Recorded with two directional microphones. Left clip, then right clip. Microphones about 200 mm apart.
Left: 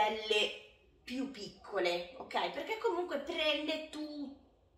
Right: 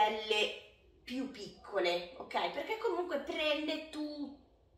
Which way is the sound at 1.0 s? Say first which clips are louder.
Even; 5° left (ahead or behind).